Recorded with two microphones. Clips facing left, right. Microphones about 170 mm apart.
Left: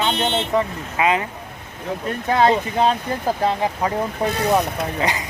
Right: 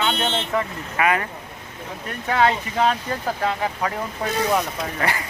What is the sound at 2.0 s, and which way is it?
Speech, 30° left (ahead or behind).